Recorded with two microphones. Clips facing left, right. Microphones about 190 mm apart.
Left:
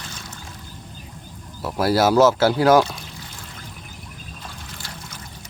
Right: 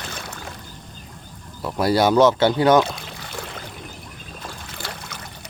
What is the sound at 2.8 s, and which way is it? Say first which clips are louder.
Pour: right 3 dB; 70° right (ahead or behind).